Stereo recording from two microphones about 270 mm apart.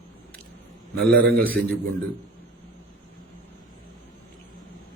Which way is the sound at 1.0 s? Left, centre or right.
Centre.